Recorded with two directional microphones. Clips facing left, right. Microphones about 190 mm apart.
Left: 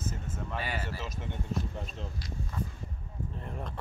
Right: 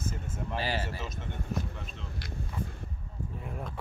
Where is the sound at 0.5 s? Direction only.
30° right (ahead or behind).